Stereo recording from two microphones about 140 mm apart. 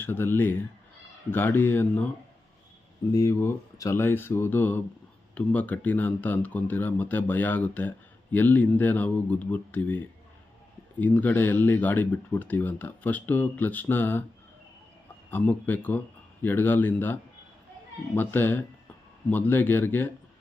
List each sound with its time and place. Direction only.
0.0 s speech: 15° left (ahead or behind)
3.1 s speech: 25° left (ahead or behind)
11.0 s speech: 10° left (ahead or behind)
15.3 s speech: 15° left (ahead or behind)